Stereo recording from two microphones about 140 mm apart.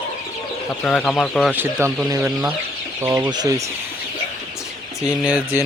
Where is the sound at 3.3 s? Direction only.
25° right (ahead or behind).